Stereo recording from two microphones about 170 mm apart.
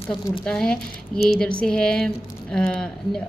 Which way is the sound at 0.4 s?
5° left (ahead or behind).